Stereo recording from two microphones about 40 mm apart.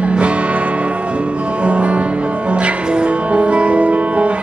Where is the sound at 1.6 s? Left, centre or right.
Right.